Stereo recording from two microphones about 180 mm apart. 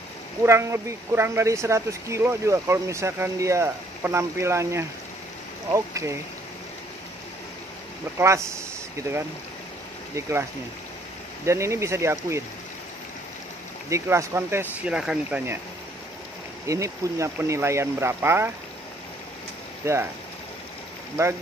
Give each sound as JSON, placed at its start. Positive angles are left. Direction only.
{"t": 0.4, "sound": "speech", "side_deg": -15}
{"t": 8.2, "sound": "speech", "side_deg": -15}
{"t": 11.4, "sound": "speech", "side_deg": -15}
{"t": 13.8, "sound": "speech", "side_deg": -15}
{"t": 16.6, "sound": "speech", "side_deg": -15}
{"t": 19.8, "sound": "speech", "side_deg": -15}